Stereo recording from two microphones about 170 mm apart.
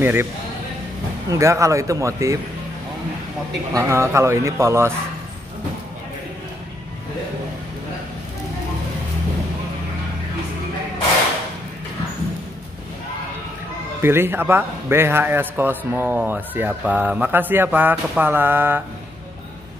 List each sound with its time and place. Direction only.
0.0 s a man's voice: 15° right (ahead or behind)
1.3 s a man's voice: 15° right (ahead or behind)
3.7 s a man's voice: 15° right (ahead or behind)
14.0 s a man's voice: 15° right (ahead or behind)